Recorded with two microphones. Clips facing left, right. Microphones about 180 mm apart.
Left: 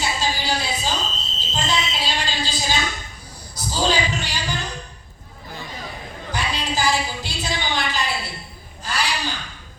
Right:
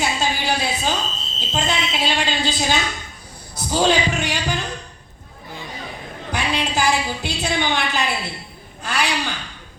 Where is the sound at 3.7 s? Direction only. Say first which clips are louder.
Right 4 dB; 60° right (ahead or behind).